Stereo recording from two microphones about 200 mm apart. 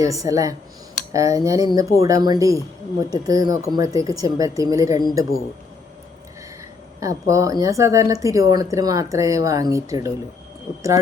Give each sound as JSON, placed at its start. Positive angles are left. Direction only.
{"t": 0.0, "sound": "speech", "side_deg": -15}
{"t": 7.0, "sound": "speech", "side_deg": -15}